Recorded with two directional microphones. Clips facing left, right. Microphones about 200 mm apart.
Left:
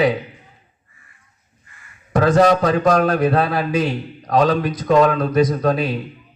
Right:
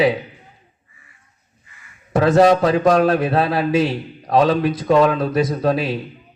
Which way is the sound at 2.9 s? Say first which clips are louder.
Left 1 dB; 25° right (ahead or behind).